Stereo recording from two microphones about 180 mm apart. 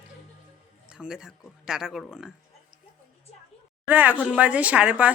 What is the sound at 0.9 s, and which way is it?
Speech, 5° right (ahead or behind).